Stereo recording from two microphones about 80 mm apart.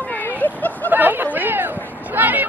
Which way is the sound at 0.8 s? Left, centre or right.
Right.